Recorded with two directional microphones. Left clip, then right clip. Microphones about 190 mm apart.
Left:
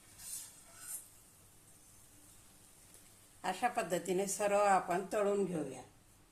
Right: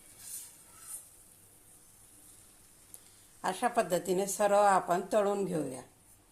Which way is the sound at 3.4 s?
35° right (ahead or behind).